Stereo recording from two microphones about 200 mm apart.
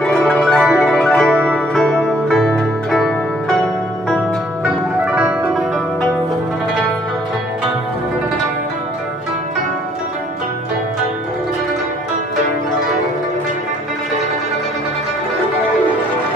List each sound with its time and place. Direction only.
0.0 s music: 5° left (ahead or behind)
5.0 s music: 5° right (ahead or behind)